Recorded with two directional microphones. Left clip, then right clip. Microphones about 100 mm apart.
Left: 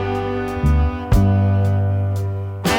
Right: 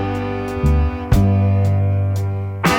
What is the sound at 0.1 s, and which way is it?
Music, centre (ahead or behind).